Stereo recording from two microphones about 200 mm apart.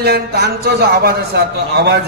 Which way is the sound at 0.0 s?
50° right (ahead or behind).